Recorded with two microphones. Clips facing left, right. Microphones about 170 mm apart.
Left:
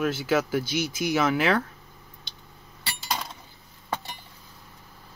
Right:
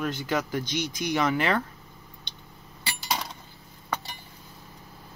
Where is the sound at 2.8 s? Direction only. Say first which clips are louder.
Right 1 dB; centre (ahead or behind).